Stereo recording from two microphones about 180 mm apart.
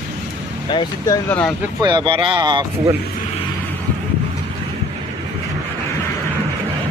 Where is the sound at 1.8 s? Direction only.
25° right (ahead or behind).